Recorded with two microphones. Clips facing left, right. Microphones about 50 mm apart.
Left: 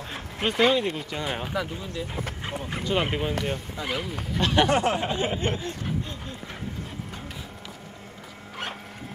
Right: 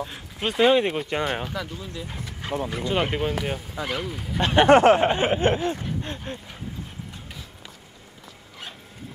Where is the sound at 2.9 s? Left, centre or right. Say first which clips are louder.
Right 1 dB; centre.